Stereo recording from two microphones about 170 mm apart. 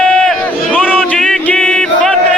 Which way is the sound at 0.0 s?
5° left (ahead or behind).